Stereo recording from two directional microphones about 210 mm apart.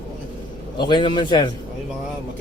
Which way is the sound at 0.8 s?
20° left (ahead or behind).